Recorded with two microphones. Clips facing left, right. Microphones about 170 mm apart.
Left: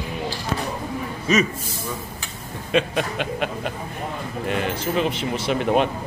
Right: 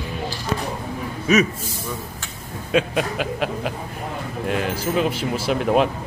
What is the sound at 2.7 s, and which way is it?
Speech, 5° right (ahead or behind).